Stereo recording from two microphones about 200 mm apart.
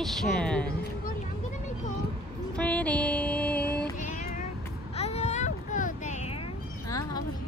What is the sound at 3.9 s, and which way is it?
Cat, 40° left (ahead or behind).